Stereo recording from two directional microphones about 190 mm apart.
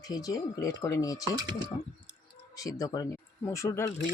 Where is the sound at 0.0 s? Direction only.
20° left (ahead or behind).